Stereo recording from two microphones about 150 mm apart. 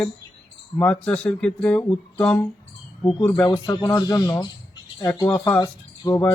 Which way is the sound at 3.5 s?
25° left (ahead or behind).